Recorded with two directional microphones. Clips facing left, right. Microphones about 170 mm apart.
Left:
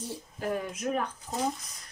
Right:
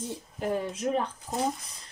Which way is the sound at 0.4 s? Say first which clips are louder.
Right 2 dB; 25° right (ahead or behind).